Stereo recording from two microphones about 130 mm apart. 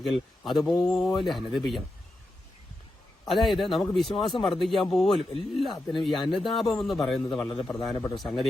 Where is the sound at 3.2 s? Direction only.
Centre (ahead or behind).